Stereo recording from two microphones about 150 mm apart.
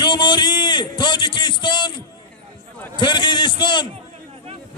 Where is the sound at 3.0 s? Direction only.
30° left (ahead or behind).